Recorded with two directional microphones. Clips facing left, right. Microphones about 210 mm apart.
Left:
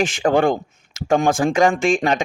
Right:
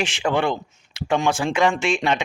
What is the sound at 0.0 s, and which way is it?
A man's voice, 50° left (ahead or behind).